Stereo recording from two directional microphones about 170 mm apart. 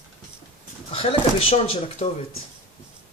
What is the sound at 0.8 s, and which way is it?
Speech, 35° left (ahead or behind).